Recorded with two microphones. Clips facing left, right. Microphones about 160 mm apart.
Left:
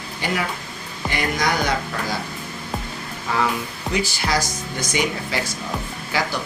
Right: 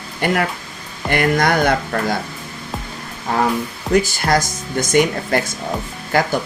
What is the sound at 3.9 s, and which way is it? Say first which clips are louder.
Speech: right 7 dB; 50° right (ahead or behind).